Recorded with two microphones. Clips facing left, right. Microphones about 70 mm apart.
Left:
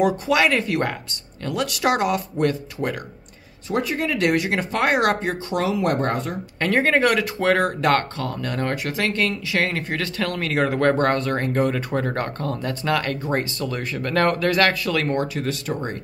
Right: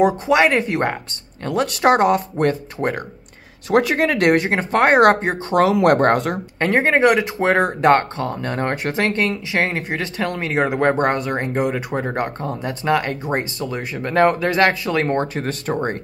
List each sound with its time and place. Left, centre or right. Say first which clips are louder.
0.0 s speech: right 4 dB; right
3.7 s speech: right 7 dB; right
4.5 s speech: right 5 dB; right
5.6 s speech: right 8 dB; right
6.6 s speech: right 3 dB; right